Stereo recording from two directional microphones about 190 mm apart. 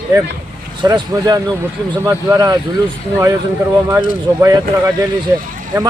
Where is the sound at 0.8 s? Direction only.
20° right (ahead or behind).